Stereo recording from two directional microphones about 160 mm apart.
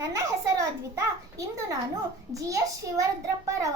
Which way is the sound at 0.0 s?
20° right (ahead or behind).